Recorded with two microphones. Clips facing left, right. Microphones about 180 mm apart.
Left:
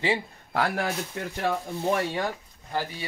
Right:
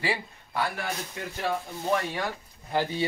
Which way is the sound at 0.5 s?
85° left.